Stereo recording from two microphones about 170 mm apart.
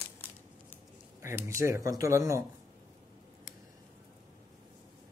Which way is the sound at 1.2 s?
15° right (ahead or behind).